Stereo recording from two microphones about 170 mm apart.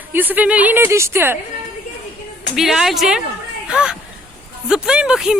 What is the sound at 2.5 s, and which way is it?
Speech, centre (ahead or behind).